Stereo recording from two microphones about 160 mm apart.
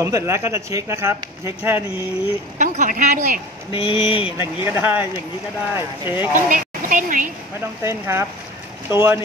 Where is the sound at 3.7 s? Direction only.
30° left (ahead or behind).